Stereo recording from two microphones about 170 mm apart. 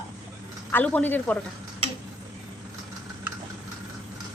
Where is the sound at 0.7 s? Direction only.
10° left (ahead or behind).